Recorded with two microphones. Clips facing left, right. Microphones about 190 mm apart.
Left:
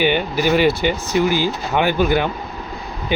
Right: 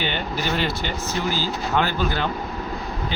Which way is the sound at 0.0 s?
10° left (ahead or behind).